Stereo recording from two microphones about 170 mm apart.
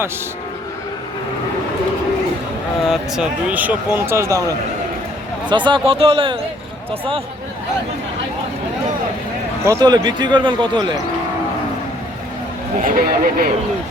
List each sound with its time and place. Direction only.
2.8 s speech: 5° right (ahead or behind); by 6.3 s 30° right (ahead or behind)
9.6 s speech: 25° right (ahead or behind)
12.8 s speech: 55° right (ahead or behind)